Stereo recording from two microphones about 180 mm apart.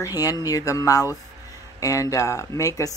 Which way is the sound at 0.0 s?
20° left (ahead or behind).